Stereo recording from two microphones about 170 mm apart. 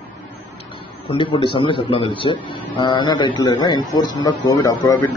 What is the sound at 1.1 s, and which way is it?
A man's voice, 30° left (ahead or behind).